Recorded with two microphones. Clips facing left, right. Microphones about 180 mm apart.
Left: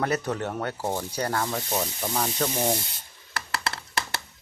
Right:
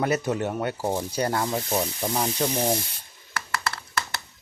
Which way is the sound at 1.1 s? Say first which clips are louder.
Right 2 dB; 20° right (ahead or behind).